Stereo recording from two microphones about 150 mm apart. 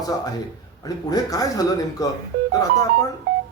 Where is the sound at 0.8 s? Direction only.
25° left (ahead or behind).